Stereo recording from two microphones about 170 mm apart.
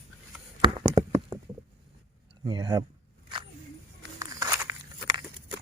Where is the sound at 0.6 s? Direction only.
25° right (ahead or behind).